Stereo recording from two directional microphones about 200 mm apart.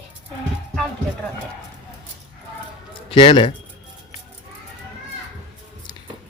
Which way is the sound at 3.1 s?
25° left (ahead or behind).